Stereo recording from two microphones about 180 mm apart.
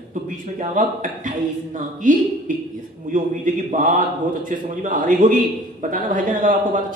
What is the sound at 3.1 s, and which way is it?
A man's voice, 45° right (ahead or behind).